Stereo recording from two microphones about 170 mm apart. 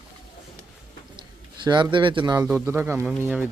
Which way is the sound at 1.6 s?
25° right (ahead or behind).